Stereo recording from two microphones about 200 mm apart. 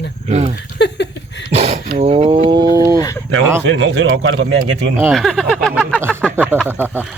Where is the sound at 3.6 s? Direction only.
65° right (ahead or behind).